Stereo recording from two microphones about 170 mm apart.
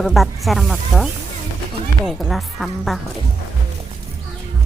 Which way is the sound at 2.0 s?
Centre (ahead or behind).